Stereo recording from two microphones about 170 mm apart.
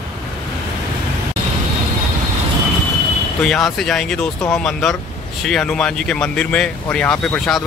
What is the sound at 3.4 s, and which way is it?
Speech, centre (ahead or behind).